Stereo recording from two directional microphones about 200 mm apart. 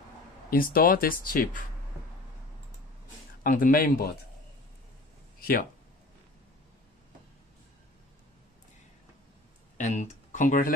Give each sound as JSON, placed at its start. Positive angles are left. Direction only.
{"t": 0.5, "sound": "speech", "side_deg": 45}
{"t": 3.4, "sound": "speech", "side_deg": 45}
{"t": 5.4, "sound": "speech", "side_deg": 45}
{"t": 9.8, "sound": "a sound", "side_deg": 35}